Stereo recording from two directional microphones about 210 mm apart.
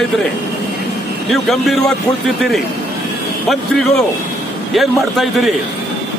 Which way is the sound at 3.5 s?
Centre (ahead or behind).